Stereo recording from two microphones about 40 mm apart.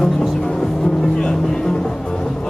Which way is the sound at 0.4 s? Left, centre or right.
Centre.